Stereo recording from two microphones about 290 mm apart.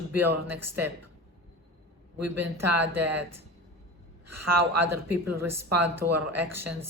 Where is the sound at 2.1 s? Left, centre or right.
Right.